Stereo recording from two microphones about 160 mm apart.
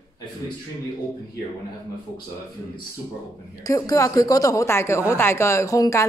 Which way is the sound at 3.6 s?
20° left (ahead or behind).